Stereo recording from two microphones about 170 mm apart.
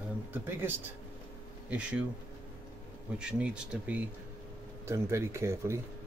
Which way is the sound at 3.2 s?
5° right (ahead or behind).